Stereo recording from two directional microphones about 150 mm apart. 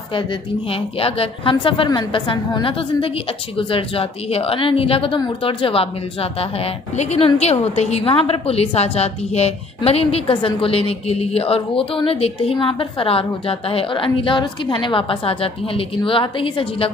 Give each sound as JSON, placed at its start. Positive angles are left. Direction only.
{"t": 0.1, "sound": "a woman's voice", "side_deg": 35}